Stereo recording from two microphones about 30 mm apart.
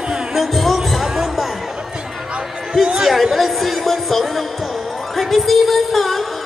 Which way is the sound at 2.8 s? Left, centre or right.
Right.